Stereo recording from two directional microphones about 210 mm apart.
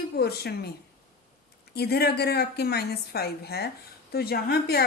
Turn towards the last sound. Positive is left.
turn(degrees=50)  # may be behind; listen again after turning